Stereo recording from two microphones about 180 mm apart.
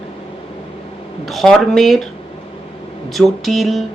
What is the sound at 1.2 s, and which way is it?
Speech, centre (ahead or behind).